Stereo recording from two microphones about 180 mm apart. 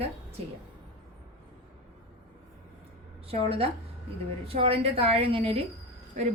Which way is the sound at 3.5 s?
35° right (ahead or behind).